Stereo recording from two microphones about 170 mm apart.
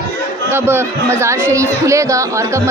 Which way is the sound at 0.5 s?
15° right (ahead or behind).